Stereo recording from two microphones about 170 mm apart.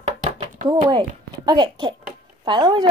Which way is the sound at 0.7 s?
30° right (ahead or behind).